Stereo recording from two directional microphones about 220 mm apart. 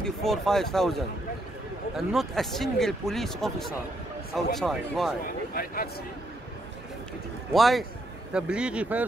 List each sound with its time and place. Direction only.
0.0 s speech: centre (ahead or behind)
5.2 s a man's voice: 40° left (ahead or behind)
7.5 s speech: centre (ahead or behind)